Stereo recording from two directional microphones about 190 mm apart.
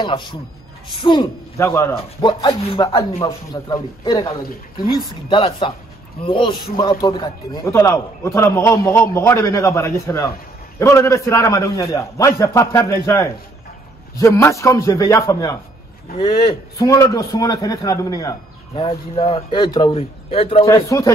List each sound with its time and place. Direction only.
0.0 s a man's voice: 25° left (ahead or behind)
3.5 s a man's voice: 20° left (ahead or behind)
16.2 s a man's voice: 25° left (ahead or behind)
18.8 s a man's voice: 30° left (ahead or behind)
20.6 s a man's voice: 15° left (ahead or behind)